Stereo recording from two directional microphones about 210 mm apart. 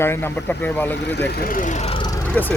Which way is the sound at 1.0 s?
55° left (ahead or behind).